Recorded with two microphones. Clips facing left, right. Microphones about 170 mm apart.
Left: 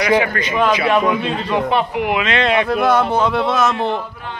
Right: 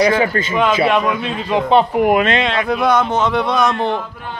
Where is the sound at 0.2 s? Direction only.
30° right (ahead or behind).